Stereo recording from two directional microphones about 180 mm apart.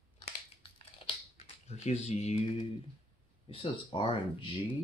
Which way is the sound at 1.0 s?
35° left (ahead or behind).